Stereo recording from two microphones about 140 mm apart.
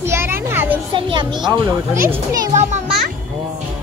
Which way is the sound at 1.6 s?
15° right (ahead or behind).